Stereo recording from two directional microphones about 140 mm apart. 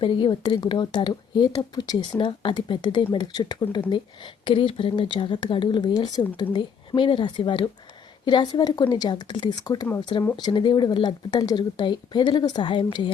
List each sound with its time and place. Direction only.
0.0 s a woman's voice: 35° left (ahead or behind)